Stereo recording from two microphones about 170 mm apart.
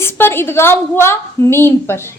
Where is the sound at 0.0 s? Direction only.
15° left (ahead or behind).